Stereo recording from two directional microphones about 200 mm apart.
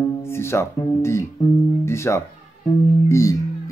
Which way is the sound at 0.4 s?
15° left (ahead or behind).